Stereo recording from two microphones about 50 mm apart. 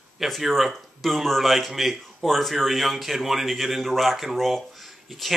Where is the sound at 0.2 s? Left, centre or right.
Centre.